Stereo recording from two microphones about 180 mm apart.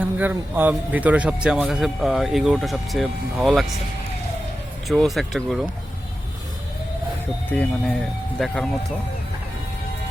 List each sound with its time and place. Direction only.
0.0 s a man's voice: 10° right (ahead or behind)
4.9 s a man's voice: centre (ahead or behind)
7.5 s a man's voice: 10° left (ahead or behind)